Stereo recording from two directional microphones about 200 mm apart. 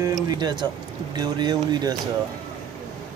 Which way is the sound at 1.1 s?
20° right (ahead or behind).